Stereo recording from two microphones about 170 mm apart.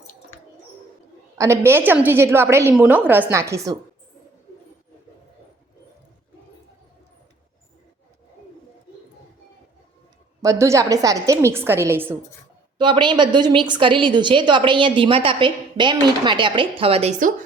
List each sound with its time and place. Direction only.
1.4 s a woman's voice: 15° right (ahead or behind)
10.4 s a woman's voice: 20° right (ahead or behind)
12.8 s a woman's voice: 25° right (ahead or behind); by 17.3 s 45° right (ahead or behind)